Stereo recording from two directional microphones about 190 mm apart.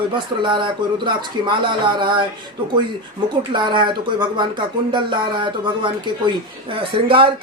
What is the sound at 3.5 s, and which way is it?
Speech, 25° right (ahead or behind).